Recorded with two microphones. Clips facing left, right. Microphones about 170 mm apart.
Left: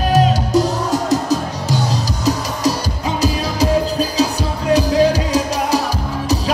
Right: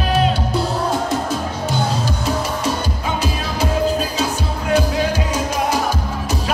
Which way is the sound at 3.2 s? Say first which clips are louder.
Left 8 dB; 35° left (ahead or behind).